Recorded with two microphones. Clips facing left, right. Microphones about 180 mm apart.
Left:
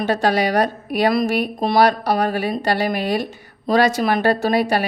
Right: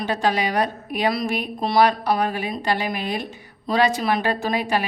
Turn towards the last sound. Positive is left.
turn(degrees=40)  # may be behind; listen again after turning